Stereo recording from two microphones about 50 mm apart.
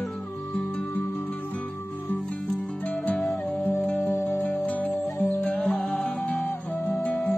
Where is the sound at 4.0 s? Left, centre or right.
Left.